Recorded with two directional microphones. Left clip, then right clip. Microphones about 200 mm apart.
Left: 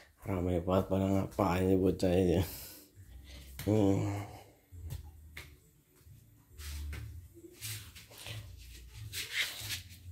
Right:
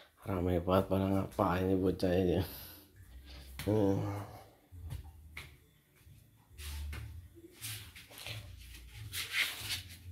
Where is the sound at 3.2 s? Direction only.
10° left (ahead or behind).